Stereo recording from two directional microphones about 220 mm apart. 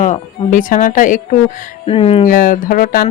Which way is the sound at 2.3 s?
40° left (ahead or behind).